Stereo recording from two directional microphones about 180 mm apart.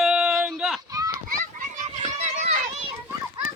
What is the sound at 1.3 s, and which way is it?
Children playing, 50° right (ahead or behind).